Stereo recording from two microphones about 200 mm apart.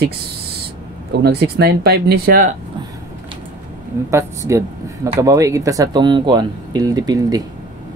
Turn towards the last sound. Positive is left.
turn(degrees=-20)  # may be behind; listen again after turning